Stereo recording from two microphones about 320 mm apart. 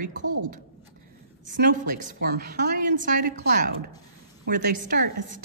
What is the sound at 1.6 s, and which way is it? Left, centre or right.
A man's voice, right.